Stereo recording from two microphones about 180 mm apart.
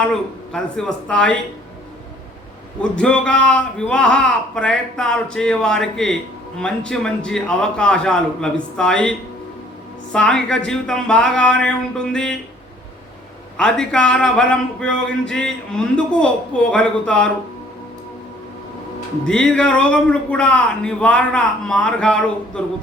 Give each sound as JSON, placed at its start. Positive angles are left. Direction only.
{"t": 0.0, "sound": "speech", "side_deg": 5}
{"t": 2.9, "sound": "speech", "side_deg": 5}
{"t": 13.6, "sound": "speech", "side_deg": 5}
{"t": 19.3, "sound": "speech", "side_deg": 5}